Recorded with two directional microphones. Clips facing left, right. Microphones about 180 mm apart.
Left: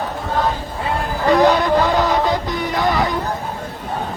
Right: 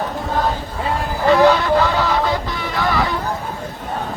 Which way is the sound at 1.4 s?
15° left (ahead or behind).